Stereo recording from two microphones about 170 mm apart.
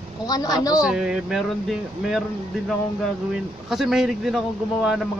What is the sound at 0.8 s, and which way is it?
Speech, 5° right (ahead or behind).